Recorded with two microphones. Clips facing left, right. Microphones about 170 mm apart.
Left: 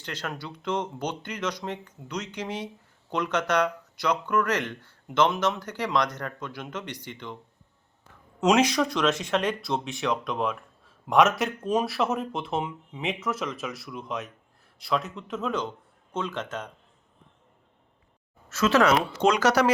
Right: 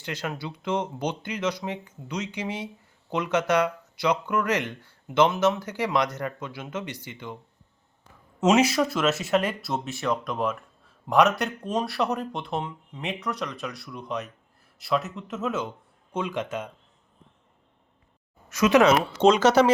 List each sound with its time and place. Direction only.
0.0 s speech: 10° right (ahead or behind)
8.4 s speech: 5° right (ahead or behind)
18.4 s speech: 15° right (ahead or behind)